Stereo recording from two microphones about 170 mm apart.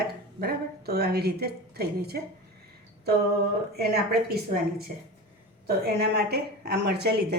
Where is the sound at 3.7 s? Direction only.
70° right (ahead or behind).